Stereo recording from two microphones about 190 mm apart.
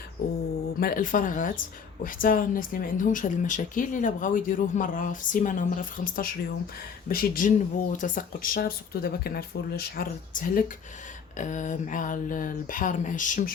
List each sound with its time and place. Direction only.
0.8 s speech: 50° left (ahead or behind)